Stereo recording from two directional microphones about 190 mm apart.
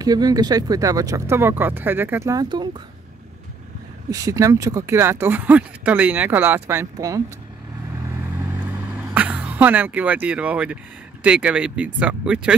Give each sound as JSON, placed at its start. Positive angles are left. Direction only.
{"t": 0.0, "sound": "speech", "side_deg": -20}
{"t": 4.1, "sound": "speech", "side_deg": -15}
{"t": 9.1, "sound": "speech", "side_deg": -5}